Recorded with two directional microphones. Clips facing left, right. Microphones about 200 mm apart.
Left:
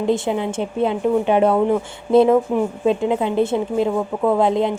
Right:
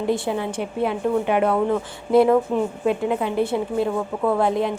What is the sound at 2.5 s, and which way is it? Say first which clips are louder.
Speech: left 2 dB; 15° left (ahead or behind).